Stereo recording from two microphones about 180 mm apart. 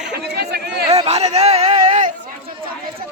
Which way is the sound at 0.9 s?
35° right (ahead or behind).